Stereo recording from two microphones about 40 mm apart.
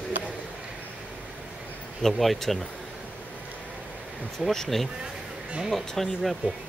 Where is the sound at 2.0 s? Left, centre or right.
Centre.